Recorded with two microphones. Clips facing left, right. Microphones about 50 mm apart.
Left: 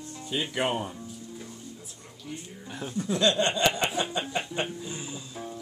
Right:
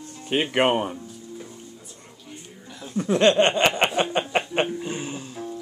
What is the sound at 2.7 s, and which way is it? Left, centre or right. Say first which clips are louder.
Speech: left 1 dB; left.